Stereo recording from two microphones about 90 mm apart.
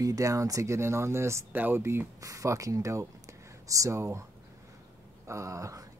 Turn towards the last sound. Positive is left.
turn(degrees=-35)  # may be behind; listen again after turning